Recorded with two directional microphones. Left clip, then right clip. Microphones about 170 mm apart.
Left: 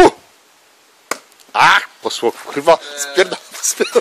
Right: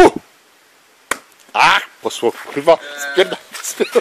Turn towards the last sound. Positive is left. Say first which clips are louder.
# left 2 dB
turn(degrees=5)  # may be behind; listen again after turning